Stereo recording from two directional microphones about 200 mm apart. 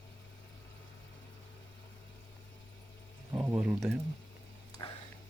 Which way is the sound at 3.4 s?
5° right (ahead or behind).